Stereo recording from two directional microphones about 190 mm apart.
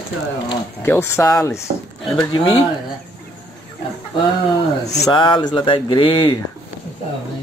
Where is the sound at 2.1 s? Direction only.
25° left (ahead or behind).